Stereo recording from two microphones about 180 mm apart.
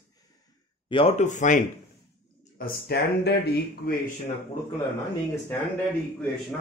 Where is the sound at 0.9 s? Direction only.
30° left (ahead or behind).